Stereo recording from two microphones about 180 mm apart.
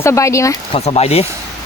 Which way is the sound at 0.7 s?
35° left (ahead or behind).